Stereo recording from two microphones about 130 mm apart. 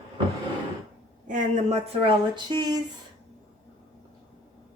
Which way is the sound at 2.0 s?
35° right (ahead or behind).